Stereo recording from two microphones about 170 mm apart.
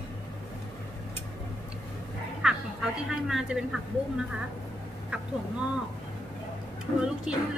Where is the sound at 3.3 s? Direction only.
5° right (ahead or behind).